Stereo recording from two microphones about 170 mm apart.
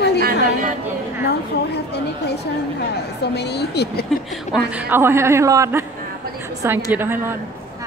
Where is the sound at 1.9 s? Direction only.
75° left (ahead or behind).